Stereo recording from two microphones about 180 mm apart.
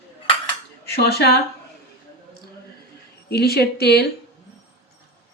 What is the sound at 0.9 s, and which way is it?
Speech, 60° left (ahead or behind).